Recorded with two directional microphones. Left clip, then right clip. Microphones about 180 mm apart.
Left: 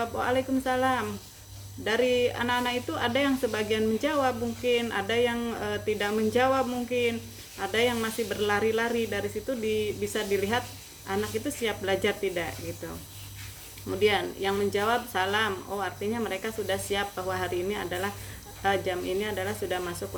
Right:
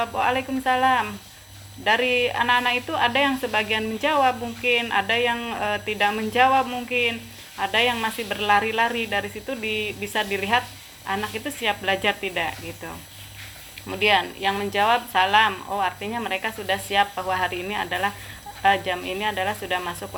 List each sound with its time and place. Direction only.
0.0 s speech: 30° left (ahead or behind)
9.6 s speech: 35° right (ahead or behind)
10.3 s speech: 25° left (ahead or behind)
14.0 s speech: 30° left (ahead or behind)